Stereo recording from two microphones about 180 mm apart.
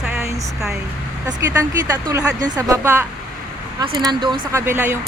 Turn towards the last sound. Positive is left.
turn(degrees=-15)  # may be behind; listen again after turning